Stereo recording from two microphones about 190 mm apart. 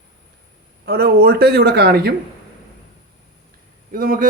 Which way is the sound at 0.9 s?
55° right (ahead or behind).